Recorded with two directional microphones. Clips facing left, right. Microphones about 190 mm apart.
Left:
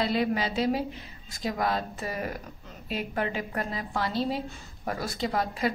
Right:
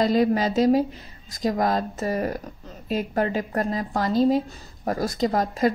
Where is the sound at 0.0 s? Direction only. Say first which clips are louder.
Right 7 dB; 40° right (ahead or behind).